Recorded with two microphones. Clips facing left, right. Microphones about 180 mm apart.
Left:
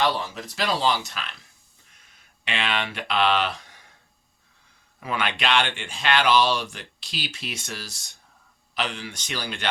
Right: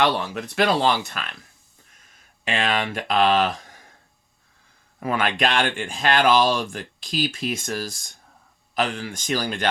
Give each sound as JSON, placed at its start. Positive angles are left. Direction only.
{"t": 0.0, "sound": "speech", "side_deg": -65}
{"t": 4.9, "sound": "speech", "side_deg": -45}